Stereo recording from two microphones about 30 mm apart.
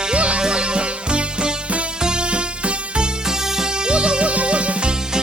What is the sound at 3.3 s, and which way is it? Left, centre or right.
Music, centre.